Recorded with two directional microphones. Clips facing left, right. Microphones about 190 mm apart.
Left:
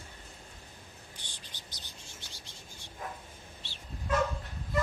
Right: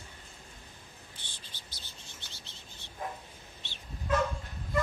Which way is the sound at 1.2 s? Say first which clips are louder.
Left 1 dB; 15° left (ahead or behind).